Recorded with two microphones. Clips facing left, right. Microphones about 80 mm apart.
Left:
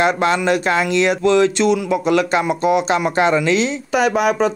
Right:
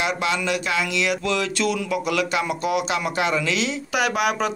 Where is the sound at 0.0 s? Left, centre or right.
Left.